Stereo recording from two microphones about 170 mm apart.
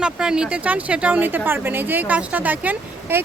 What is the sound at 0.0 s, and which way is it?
Speech, 5° right (ahead or behind).